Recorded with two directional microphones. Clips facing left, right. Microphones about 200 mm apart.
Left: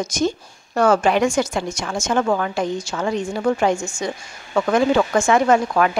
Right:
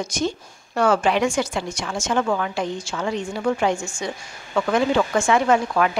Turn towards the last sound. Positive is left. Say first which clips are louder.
# left 2 dB
turn(degrees=45)  # may be behind; listen again after turning